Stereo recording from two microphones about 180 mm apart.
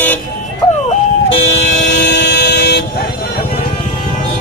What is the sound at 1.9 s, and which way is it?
Vehicle, 55° left (ahead or behind).